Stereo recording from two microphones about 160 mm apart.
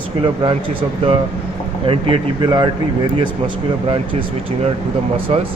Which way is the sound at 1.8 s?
35° right (ahead or behind).